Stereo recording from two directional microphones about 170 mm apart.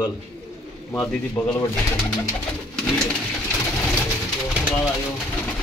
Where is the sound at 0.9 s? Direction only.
5° left (ahead or behind).